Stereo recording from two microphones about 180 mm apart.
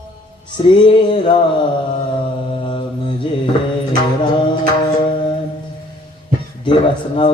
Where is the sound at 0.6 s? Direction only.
30° left (ahead or behind).